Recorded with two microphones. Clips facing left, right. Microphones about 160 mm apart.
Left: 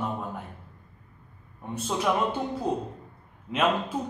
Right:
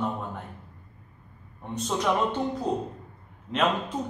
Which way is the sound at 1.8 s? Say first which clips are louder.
Even; 5° left (ahead or behind).